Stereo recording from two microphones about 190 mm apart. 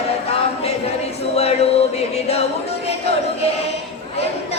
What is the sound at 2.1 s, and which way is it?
Music, 35° left (ahead or behind).